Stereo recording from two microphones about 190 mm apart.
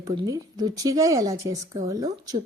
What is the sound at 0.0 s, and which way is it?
A woman's voice, 20° right (ahead or behind).